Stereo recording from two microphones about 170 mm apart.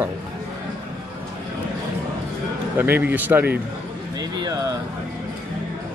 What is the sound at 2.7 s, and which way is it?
Speech, 10° right (ahead or behind).